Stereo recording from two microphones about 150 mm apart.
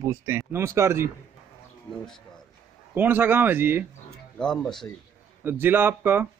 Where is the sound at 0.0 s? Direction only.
20° right (ahead or behind).